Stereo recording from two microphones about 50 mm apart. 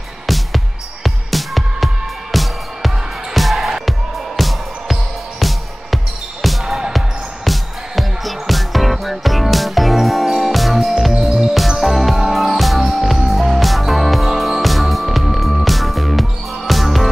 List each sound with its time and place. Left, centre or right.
0.3 s music: centre
6.6 s basketball bounce: centre
6.9 s music: centre